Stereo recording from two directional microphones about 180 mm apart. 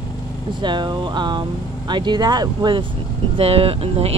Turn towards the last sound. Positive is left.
turn(degrees=-35)  # may be behind; listen again after turning